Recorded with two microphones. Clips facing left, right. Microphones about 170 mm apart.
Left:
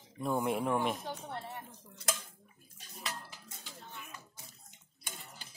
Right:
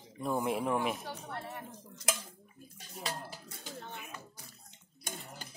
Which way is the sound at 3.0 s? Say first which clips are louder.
Right 4 dB; 30° right (ahead or behind).